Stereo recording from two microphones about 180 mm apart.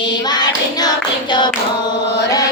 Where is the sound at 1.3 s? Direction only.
25° left (ahead or behind).